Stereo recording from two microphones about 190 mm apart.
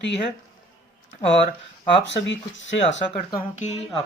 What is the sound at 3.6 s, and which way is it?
Speech, 35° left (ahead or behind).